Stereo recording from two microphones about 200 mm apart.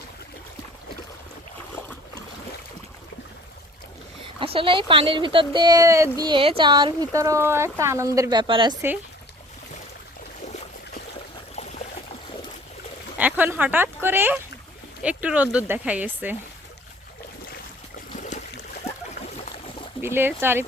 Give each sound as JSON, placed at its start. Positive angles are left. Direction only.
{"t": 1.7, "sound": "boat", "side_deg": 10}
{"t": 4.4, "sound": "speech", "side_deg": -25}
{"t": 10.4, "sound": "boat", "side_deg": 35}
{"t": 11.5, "sound": "a sound", "side_deg": 35}
{"t": 13.1, "sound": "speech", "side_deg": -10}
{"t": 18.2, "sound": "a sound", "side_deg": 35}
{"t": 19.2, "sound": "boat", "side_deg": 30}
{"t": 20.0, "sound": "speech", "side_deg": -10}